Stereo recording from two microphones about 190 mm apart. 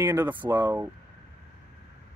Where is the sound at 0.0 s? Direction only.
15° right (ahead or behind).